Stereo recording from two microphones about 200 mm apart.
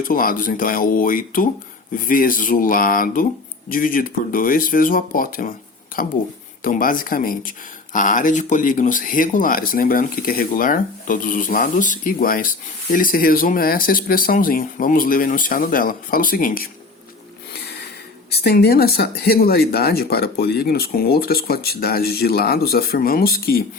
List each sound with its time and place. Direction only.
0.0 s speech: 45° left (ahead or behind)
6.6 s speech: 45° left (ahead or behind)
18.3 s speech: 55° left (ahead or behind)